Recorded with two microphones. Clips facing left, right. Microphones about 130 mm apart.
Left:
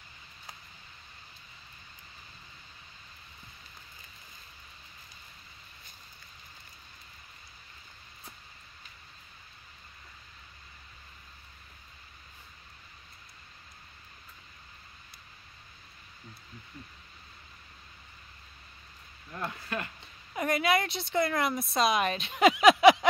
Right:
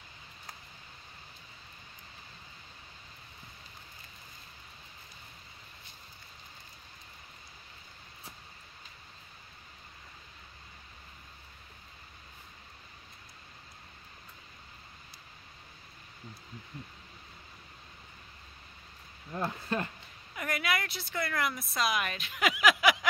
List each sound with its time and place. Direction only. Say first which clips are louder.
19.3 s speech: right 3 dB; 30° right (ahead or behind)
20.3 s speech: left 6 dB; 25° left (ahead or behind)